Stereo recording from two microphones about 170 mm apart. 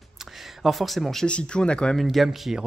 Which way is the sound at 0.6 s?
Centre (ahead or behind).